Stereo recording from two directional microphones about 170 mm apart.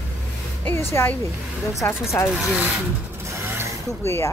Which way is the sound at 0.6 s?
10° left (ahead or behind).